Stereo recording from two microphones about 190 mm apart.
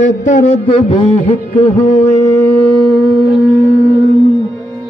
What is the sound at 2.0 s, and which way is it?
Wind instrument, 15° left (ahead or behind).